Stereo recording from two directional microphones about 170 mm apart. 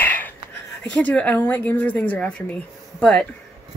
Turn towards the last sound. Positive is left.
turn(degrees=5)  # may be behind; listen again after turning